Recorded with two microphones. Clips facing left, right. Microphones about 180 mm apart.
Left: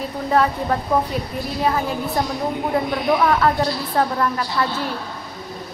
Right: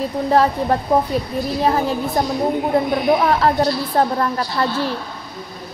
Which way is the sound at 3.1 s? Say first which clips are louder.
Even; 30° right (ahead or behind).